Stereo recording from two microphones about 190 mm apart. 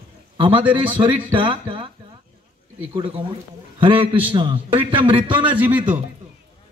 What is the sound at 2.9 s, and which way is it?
A man's voice, 25° right (ahead or behind).